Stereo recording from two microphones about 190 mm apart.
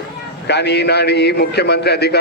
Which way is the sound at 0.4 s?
60° left (ahead or behind).